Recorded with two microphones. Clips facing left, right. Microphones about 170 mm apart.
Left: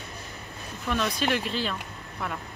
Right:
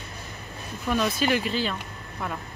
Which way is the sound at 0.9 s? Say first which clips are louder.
Right 3 dB; 5° right (ahead or behind).